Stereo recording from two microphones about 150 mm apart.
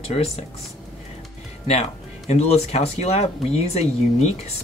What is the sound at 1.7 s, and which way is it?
Speech, 45° left (ahead or behind).